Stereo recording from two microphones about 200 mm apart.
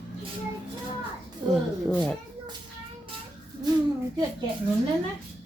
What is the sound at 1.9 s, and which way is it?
Speech, 5° left (ahead or behind).